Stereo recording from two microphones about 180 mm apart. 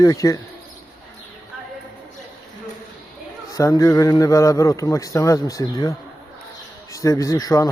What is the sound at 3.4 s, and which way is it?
A man's voice, 20° left (ahead or behind).